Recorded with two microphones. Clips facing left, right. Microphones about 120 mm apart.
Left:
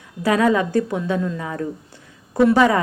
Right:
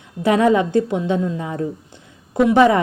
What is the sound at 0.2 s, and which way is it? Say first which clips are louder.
A woman's voice: right 2 dB; 25° right (ahead or behind).